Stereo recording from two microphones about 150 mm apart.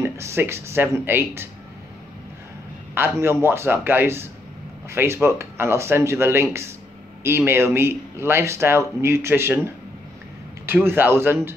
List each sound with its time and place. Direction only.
0.0 s a man's voice: 15° right (ahead or behind)
2.9 s a man's voice: 15° right (ahead or behind)
10.7 s a man's voice: 15° right (ahead or behind)